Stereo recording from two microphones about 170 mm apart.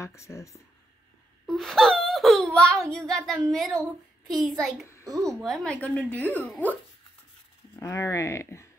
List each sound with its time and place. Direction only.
0.0 s a woman's voice: 15° left (ahead or behind)
1.4 s a child's voice: centre (ahead or behind); by 8.6 s 15° left (ahead or behind)